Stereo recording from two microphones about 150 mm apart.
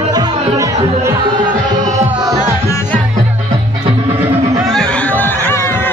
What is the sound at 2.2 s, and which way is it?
Music, 20° right (ahead or behind).